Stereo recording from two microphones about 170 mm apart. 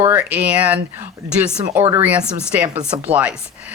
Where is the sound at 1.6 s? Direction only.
25° right (ahead or behind).